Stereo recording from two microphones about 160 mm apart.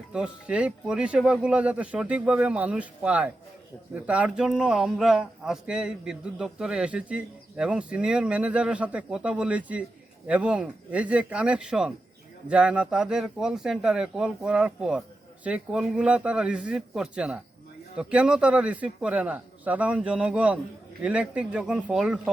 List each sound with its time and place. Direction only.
0.1 s speech: 5° right (ahead or behind)